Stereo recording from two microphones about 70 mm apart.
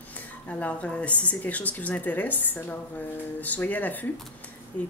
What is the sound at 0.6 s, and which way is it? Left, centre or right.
Speech, centre.